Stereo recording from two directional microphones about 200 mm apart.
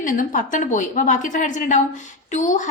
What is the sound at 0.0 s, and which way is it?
A woman's voice, 40° left (ahead or behind).